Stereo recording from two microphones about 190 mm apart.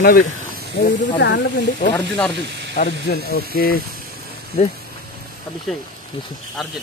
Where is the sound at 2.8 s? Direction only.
40° left (ahead or behind).